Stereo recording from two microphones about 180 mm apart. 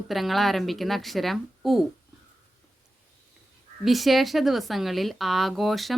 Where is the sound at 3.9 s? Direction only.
Centre (ahead or behind).